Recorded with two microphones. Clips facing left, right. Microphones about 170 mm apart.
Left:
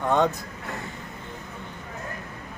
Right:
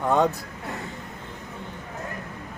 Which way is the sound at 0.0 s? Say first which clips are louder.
Right 1 dB; 5° right (ahead or behind).